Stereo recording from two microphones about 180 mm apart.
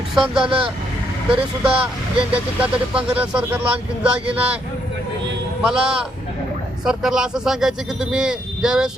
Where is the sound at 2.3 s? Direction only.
5° right (ahead or behind).